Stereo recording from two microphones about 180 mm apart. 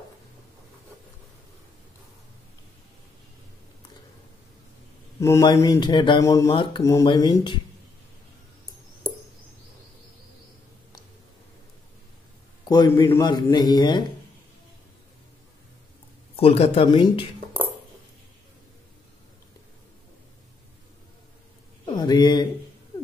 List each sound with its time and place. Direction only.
5.2 s speech: 20° left (ahead or behind)
6.5 s speech: 25° left (ahead or behind)
6.8 s speech: 15° left (ahead or behind)
12.6 s speech: 20° left (ahead or behind)
16.3 s speech: 35° left (ahead or behind)
21.9 s speech: 25° left (ahead or behind)